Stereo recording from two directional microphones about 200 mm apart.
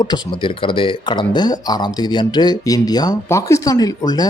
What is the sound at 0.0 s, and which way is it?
Speech, 20° left (ahead or behind).